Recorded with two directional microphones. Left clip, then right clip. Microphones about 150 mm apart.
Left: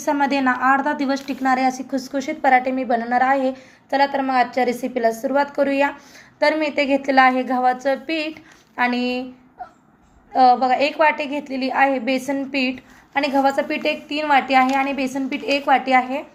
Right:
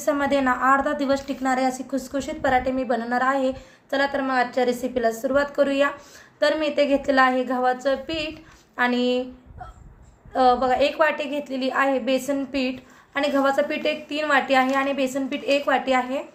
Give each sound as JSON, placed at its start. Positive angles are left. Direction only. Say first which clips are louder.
{"t": 0.0, "sound": "a woman's voice", "louder": "left 2 dB", "side_deg": 10}
{"t": 10.3, "sound": "a woman's voice", "louder": "left 4 dB", "side_deg": 10}
{"t": 12.5, "sound": "a woman's voice", "louder": "left 4 dB", "side_deg": -55}
{"t": 13.1, "sound": "a woman's voice", "louder": "left 2 dB", "side_deg": 10}